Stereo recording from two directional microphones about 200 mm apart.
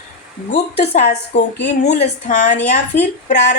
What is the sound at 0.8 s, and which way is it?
Speech, 35° left (ahead or behind).